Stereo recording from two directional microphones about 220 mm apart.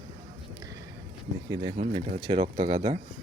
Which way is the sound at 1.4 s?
15° right (ahead or behind).